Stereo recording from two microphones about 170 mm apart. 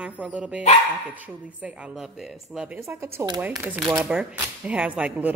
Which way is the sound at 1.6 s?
5° right (ahead or behind).